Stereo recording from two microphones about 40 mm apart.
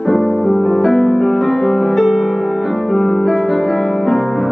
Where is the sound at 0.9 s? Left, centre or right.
Centre.